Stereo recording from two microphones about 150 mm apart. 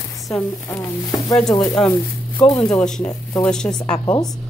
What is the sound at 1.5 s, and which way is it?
Speech, 25° left (ahead or behind).